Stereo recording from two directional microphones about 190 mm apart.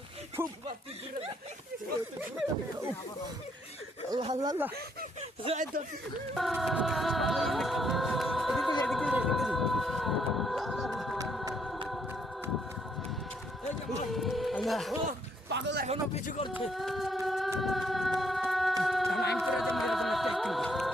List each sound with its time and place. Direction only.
0.4 s speech: 10° right (ahead or behind)
4.1 s speech: 25° right (ahead or behind)
5.5 s speech: 40° right (ahead or behind)
6.3 s music: centre (ahead or behind)
14.1 s a sound: centre (ahead or behind)
15.4 s music: 65° right (ahead or behind)
16.6 s speech: centre (ahead or behind)
17.6 s a sound: centre (ahead or behind)
19.4 s music: centre (ahead or behind)